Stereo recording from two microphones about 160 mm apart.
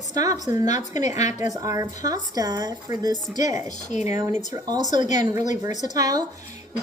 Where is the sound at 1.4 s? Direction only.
20° right (ahead or behind).